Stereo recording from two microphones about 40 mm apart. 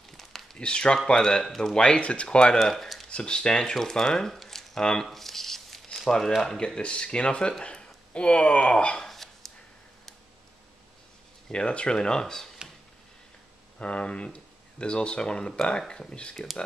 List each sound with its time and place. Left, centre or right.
0.2 s a sound: centre
0.6 s speech: left
1.8 s speech: left
2.6 s a sound: centre
3.1 s speech: left
4.3 s a sound: centre
5.1 s squish: centre
6.0 s speech: centre
6.8 s speech: left
9.1 s a sound: centre
11.5 s speech: left
13.7 s speech: left